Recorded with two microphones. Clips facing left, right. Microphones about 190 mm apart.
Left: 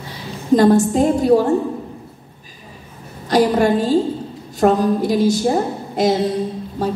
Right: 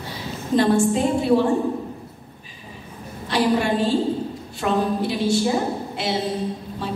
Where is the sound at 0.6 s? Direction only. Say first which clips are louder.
Left 4 dB; 40° left (ahead or behind).